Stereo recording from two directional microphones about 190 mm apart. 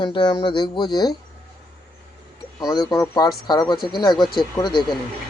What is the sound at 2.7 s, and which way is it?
Speech, 20° left (ahead or behind).